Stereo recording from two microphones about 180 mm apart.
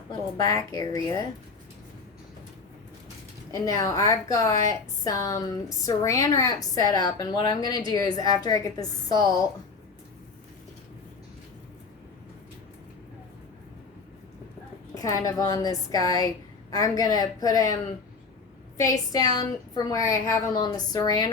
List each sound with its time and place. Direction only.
0.3 s a woman's voice: 20° left (ahead or behind)
3.5 s a woman's voice: 20° left (ahead or behind)
14.9 s a woman's voice: 20° left (ahead or behind)
18.8 s a woman's voice: 20° left (ahead or behind)